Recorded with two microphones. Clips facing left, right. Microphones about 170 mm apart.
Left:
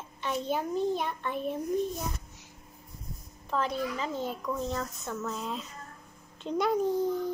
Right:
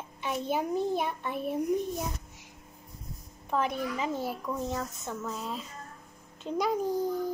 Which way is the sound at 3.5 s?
15° right (ahead or behind).